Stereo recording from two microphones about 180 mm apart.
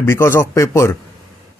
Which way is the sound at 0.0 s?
15° left (ahead or behind).